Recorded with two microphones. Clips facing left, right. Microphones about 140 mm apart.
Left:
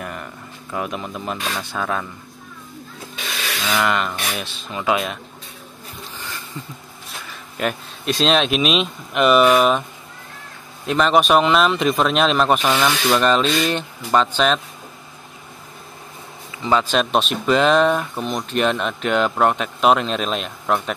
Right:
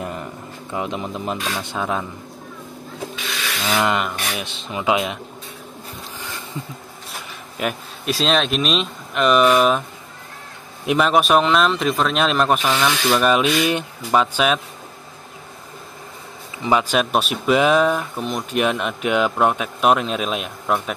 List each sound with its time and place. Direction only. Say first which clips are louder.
0.0 s speech: right 3 dB; 25° right (ahead or behind)
3.7 s speech: even; 20° right (ahead or behind)
7.5 s speech: left 1 dB; 5° right (ahead or behind)
10.9 s speech: even; 5° right (ahead or behind)
16.6 s speech: even; 15° right (ahead or behind)